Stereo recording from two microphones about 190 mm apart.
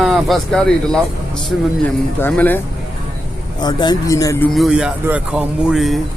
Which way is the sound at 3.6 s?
20° left (ahead or behind).